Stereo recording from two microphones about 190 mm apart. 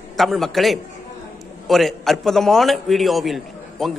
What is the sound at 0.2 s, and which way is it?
A man's voice, centre (ahead or behind).